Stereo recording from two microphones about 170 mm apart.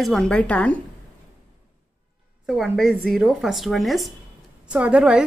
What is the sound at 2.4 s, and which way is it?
A woman's voice, centre (ahead or behind).